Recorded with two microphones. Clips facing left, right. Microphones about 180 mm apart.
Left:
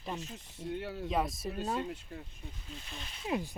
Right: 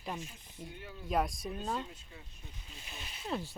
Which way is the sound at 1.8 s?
65° left (ahead or behind).